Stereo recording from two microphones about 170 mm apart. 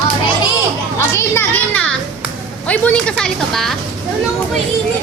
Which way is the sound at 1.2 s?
10° left (ahead or behind).